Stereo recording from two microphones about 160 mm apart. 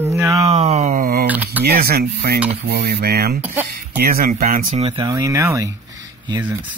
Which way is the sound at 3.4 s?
10° right (ahead or behind).